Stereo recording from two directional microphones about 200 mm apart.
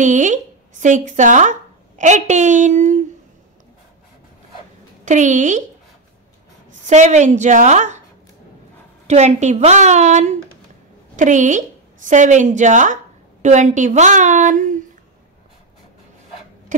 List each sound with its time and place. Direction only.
0.0 s speech: 40° right (ahead or behind)
5.0 s a woman's voice: 40° right (ahead or behind)
6.7 s a woman's voice: 35° right (ahead or behind)
9.0 s a woman's voice: 35° right (ahead or behind)